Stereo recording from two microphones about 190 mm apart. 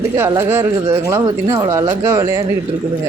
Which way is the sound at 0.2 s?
15° right (ahead or behind).